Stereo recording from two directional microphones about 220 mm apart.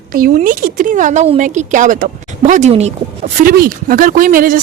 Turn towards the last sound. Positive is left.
turn(degrees=-40)  # may be behind; listen again after turning